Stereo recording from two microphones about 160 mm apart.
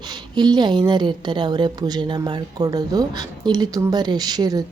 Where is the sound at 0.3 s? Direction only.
25° right (ahead or behind).